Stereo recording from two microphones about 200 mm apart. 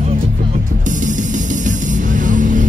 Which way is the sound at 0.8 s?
40° right (ahead or behind).